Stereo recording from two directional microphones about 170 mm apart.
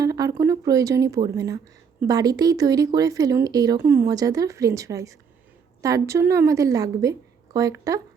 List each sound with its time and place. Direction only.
0.0 s speech: 20° right (ahead or behind)